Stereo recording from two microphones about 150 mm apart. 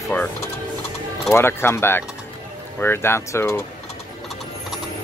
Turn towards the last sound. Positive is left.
turn(degrees=15)  # may be behind; listen again after turning